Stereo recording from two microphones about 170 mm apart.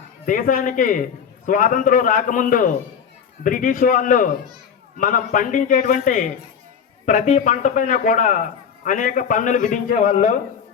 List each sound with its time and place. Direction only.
0.3 s a man's voice: 50° left (ahead or behind)